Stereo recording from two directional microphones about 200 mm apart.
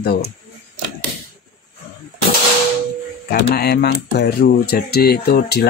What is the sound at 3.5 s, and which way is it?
Speech, 50° left (ahead or behind).